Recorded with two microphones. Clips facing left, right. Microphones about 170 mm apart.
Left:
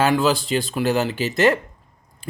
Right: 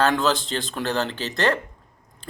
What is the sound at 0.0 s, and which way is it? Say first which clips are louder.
A man's voice: left 3 dB; 5° left (ahead or behind).